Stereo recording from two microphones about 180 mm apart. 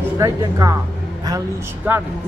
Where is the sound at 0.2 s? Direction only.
20° right (ahead or behind).